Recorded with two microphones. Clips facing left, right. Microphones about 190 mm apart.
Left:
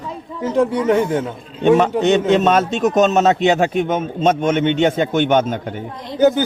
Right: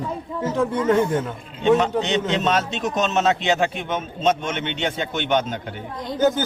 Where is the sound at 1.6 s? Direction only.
55° left (ahead or behind).